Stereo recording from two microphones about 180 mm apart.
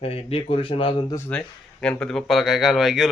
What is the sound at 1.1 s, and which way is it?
Speech, 10° left (ahead or behind).